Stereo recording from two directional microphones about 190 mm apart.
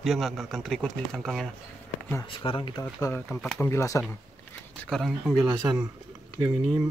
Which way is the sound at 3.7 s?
15° left (ahead or behind).